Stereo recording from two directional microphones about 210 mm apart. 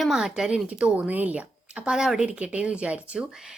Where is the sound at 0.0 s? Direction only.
Centre (ahead or behind).